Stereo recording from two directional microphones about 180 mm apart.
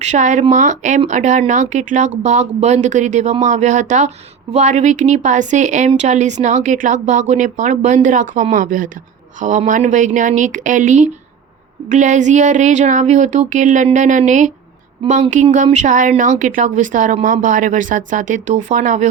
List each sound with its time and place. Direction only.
0.0 s speech: 40° right (ahead or behind)